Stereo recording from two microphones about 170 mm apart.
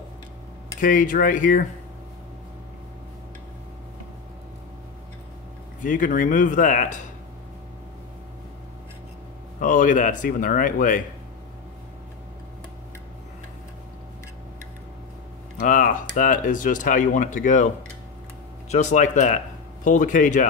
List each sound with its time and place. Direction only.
0.7 s speech: 50° left (ahead or behind)
5.8 s speech: 50° left (ahead or behind)
9.6 s speech: 50° left (ahead or behind)
15.6 s speech: 50° left (ahead or behind)
18.7 s speech: 45° left (ahead or behind)